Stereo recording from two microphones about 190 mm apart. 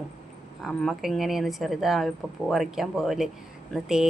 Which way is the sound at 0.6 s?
5° left (ahead or behind).